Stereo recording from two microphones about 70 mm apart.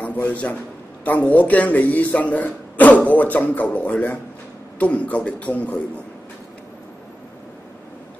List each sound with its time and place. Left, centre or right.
0.0 s a man's voice: left